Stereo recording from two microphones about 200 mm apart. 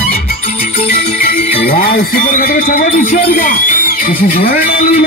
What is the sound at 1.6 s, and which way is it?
Speech, 45° left (ahead or behind).